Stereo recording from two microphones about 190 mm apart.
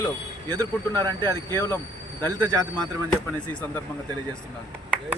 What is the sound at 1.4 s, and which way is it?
Speech, 15° left (ahead or behind).